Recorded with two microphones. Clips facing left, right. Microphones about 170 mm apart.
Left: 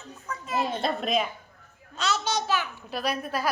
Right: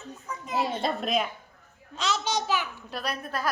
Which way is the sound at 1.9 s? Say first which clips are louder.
Left 1 dB; 15° right (ahead or behind).